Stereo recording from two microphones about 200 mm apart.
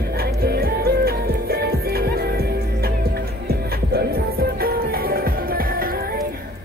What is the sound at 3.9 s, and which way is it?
Music, 50° right (ahead or behind).